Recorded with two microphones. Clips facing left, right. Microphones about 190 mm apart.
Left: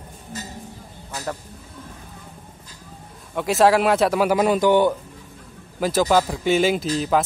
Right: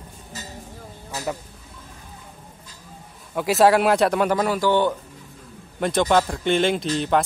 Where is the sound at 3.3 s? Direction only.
Centre (ahead or behind).